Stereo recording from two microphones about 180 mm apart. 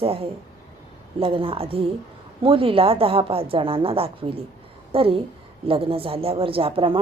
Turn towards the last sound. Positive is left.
turn(degrees=-30)  # may be behind; listen again after turning